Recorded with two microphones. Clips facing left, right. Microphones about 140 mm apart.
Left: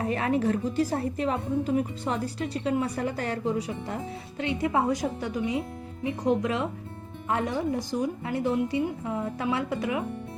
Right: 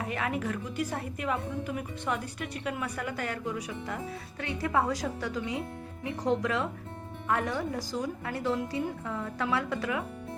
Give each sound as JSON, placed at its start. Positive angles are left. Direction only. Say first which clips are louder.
{"t": 0.0, "sound": "a woman's voice", "louder": "left 7 dB", "side_deg": 35}